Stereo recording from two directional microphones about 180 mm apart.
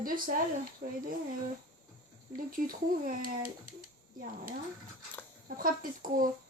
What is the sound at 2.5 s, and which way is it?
Speech, 50° right (ahead or behind).